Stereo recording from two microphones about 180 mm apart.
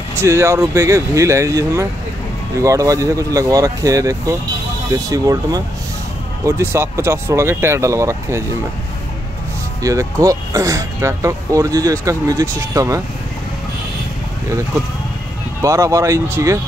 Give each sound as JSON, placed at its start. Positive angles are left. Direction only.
{"t": 0.2, "sound": "speech", "side_deg": -15}
{"t": 9.8, "sound": "speech", "side_deg": -15}
{"t": 15.6, "sound": "speech", "side_deg": -15}